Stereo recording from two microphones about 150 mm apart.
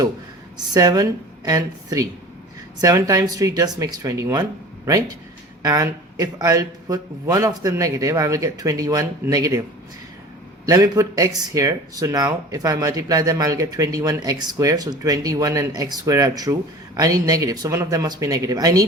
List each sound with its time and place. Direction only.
0.5 s speech: 25° right (ahead or behind)
10.7 s speech: 20° right (ahead or behind)